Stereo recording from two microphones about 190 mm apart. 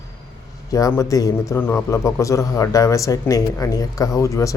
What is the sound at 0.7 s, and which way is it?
A man's voice, 15° left (ahead or behind).